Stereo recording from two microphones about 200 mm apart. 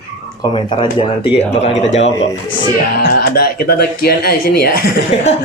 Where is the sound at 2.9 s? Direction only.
55° left (ahead or behind).